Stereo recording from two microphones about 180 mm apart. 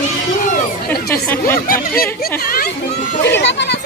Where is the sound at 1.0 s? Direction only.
15° left (ahead or behind).